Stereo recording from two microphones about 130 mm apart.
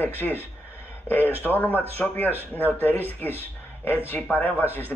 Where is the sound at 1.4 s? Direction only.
15° left (ahead or behind).